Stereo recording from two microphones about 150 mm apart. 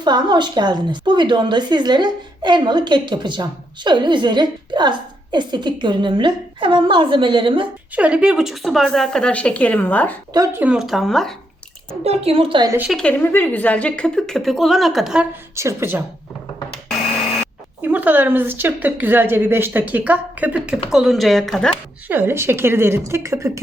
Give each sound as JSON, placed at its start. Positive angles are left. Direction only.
{"t": 0.0, "sound": "a woman's voice", "side_deg": -30}
{"t": 7.9, "sound": "a woman's voice", "side_deg": -10}
{"t": 10.3, "sound": "speech", "side_deg": -20}
{"t": 10.6, "sound": "a woman's voice", "side_deg": -5}
{"t": 12.0, "sound": "a woman's voice", "side_deg": -40}
{"t": 12.9, "sound": "a woman's voice", "side_deg": 5}
{"t": 15.5, "sound": "a woman's voice", "side_deg": -15}
{"t": 17.8, "sound": "a woman's voice", "side_deg": -10}
{"t": 22.0, "sound": "a woman's voice", "side_deg": -15}